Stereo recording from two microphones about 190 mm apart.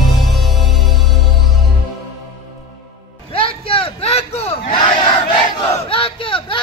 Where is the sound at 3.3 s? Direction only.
30° left (ahead or behind).